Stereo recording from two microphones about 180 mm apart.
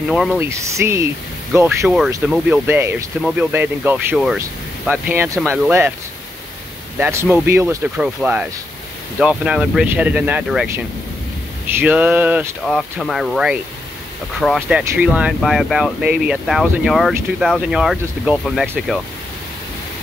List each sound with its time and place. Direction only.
0.1 s speech: 5° right (ahead or behind)
0.5 s speech: 15° right (ahead or behind)
7.0 s speech: 10° right (ahead or behind)
12.6 s speech: centre (ahead or behind)